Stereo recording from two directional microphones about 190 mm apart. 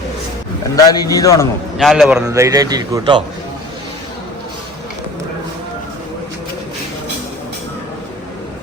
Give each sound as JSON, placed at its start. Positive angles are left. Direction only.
{"t": 0.8, "sound": "a man's voice", "side_deg": 20}
{"t": 1.8, "sound": "a man's voice", "side_deg": 0}
{"t": 2.2, "sound": "a man's voice", "side_deg": -15}